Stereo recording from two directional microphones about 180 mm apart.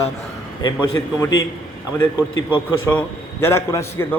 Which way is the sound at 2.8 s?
10° left (ahead or behind).